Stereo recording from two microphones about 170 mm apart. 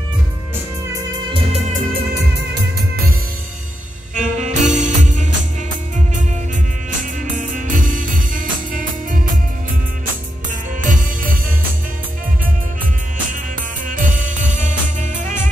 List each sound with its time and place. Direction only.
1.3 s music: 40° right (ahead or behind)
2.0 s music: 75° right (ahead or behind)
4.1 s music: 50° right (ahead or behind)
7.0 s music: 50° right (ahead or behind)
10.8 s music: 50° right (ahead or behind)
13.8 s music: 50° right (ahead or behind)